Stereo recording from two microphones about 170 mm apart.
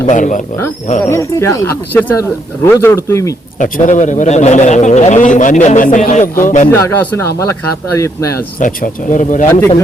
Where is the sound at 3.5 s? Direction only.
50° left (ahead or behind).